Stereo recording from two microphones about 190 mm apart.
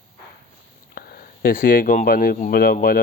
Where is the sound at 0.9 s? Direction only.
50° left (ahead or behind).